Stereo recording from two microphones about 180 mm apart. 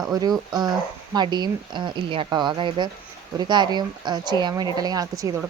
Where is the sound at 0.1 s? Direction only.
20° right (ahead or behind).